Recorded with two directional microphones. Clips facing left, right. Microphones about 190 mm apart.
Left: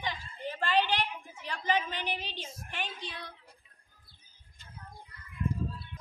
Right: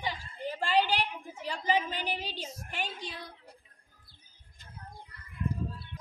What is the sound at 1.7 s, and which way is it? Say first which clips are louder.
Speech: right 2 dB; 40° right (ahead or behind).